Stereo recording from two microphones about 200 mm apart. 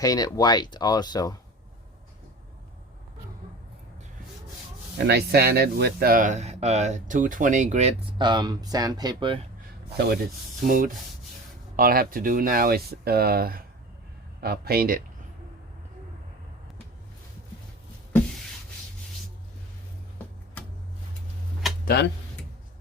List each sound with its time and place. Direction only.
0.0 s speech: 20° left (ahead or behind)
4.9 s speech: 55° right (ahead or behind); by 9.4 s 20° right (ahead or behind)
10.6 s speech: 40° right (ahead or behind)
21.8 s speech: 55° left (ahead or behind)